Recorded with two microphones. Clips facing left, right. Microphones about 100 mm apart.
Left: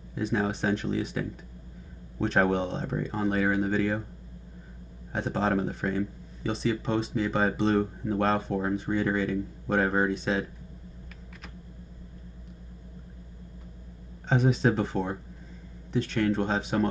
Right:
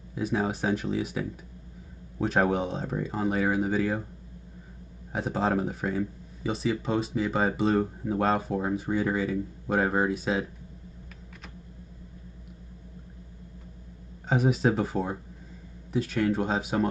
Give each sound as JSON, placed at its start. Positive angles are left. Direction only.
{"t": 0.1, "sound": "speech", "side_deg": -5}
{"t": 5.1, "sound": "speech", "side_deg": -5}
{"t": 14.2, "sound": "speech", "side_deg": -5}